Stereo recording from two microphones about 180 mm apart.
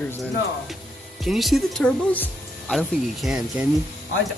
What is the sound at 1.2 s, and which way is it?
Speech, centre (ahead or behind).